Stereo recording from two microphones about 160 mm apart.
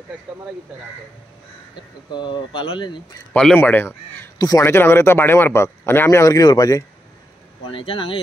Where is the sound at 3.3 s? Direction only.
10° left (ahead or behind).